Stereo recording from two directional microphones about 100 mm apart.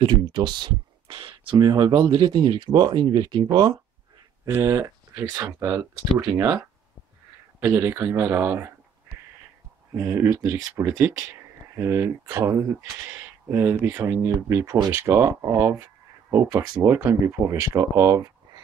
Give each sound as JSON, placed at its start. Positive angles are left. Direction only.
{"t": 0.0, "sound": "speech", "side_deg": -50}
{"t": 4.5, "sound": "speech", "side_deg": -30}
{"t": 9.9, "sound": "speech", "side_deg": -30}